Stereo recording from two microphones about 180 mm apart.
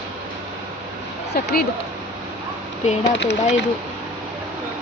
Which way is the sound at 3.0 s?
70° left (ahead or behind).